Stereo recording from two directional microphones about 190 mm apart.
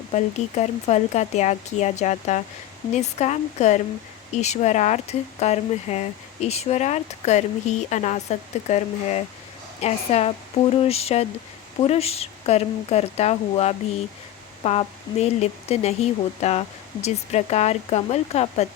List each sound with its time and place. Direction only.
0.1 s speech: 35° left (ahead or behind)